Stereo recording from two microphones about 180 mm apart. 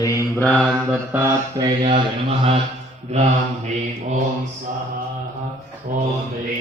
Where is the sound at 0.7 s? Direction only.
10° right (ahead or behind).